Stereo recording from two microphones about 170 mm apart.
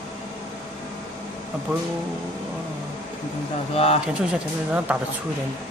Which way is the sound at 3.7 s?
35° left (ahead or behind).